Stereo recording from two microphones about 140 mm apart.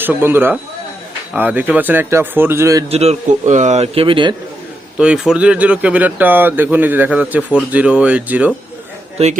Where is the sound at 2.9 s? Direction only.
50° right (ahead or behind).